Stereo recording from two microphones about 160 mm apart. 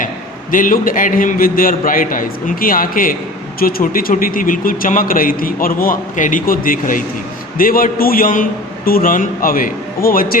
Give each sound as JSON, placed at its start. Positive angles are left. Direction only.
{"t": 0.5, "sound": "a man's voice", "side_deg": 60}